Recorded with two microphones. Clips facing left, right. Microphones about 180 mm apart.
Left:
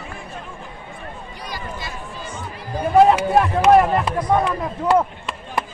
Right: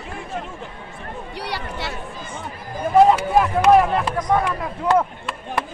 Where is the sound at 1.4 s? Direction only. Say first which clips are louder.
Right 3 dB; 70° right (ahead or behind).